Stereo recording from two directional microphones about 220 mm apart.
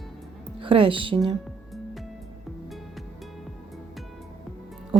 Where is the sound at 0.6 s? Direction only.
25° right (ahead or behind).